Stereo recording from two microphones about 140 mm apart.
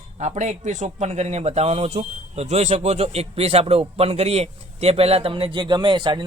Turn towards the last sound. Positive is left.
turn(degrees=-35)  # may be behind; listen again after turning